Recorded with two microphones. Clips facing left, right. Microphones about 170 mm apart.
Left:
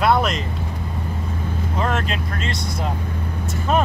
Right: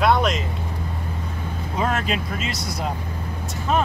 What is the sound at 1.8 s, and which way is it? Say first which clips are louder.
Speech: right 1 dB; 5° right (ahead or behind).